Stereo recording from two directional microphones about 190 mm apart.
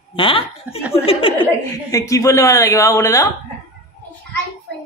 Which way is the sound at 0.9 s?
30° left (ahead or behind).